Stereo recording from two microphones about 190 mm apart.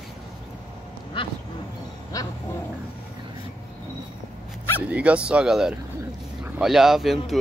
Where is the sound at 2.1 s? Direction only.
20° left (ahead or behind).